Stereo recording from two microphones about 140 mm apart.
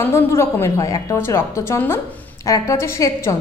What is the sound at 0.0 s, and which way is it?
A woman's voice, 20° left (ahead or behind).